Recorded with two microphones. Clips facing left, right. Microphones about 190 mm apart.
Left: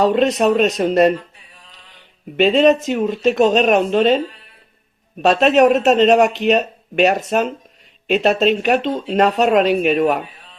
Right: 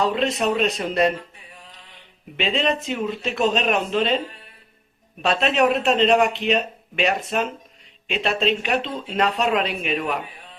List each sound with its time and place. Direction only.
0.0 s speech: 45° left (ahead or behind)
2.3 s speech: 45° left (ahead or behind)
5.2 s speech: 45° left (ahead or behind)